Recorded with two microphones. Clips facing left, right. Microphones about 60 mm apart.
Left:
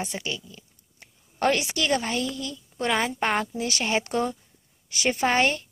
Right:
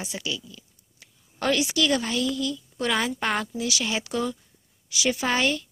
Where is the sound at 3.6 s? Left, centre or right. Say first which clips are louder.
Left 2 dB; left.